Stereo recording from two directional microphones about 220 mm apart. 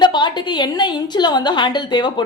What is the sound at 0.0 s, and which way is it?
A woman's voice, 20° left (ahead or behind).